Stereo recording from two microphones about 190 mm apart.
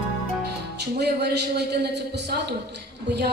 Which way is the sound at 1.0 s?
60° right (ahead or behind).